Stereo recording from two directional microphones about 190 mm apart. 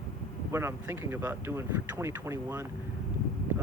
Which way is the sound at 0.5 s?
15° right (ahead or behind).